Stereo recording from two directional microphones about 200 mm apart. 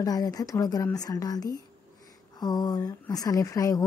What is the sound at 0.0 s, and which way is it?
Speech, 20° left (ahead or behind).